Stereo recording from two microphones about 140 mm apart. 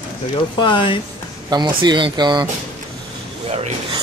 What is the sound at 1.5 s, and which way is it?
Speech, 30° right (ahead or behind).